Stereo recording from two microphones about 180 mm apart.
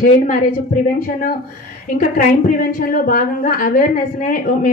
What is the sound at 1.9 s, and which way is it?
Speech, 50° left (ahead or behind).